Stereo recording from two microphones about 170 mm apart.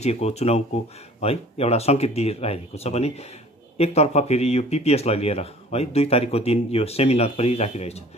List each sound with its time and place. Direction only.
0.0 s speech: 40° left (ahead or behind)